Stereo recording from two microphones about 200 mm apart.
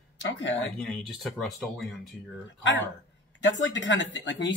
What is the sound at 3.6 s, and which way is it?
Speech, 65° left (ahead or behind).